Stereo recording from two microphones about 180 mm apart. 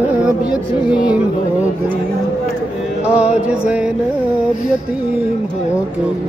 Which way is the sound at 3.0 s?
5° right (ahead or behind).